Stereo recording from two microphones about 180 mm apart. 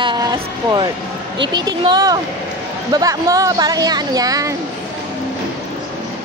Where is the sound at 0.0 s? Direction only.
25° right (ahead or behind).